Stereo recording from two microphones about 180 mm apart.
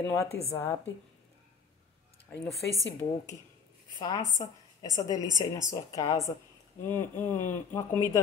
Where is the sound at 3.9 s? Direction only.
20° left (ahead or behind).